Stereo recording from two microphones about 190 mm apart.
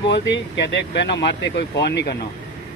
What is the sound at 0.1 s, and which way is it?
Speech, 70° left (ahead or behind).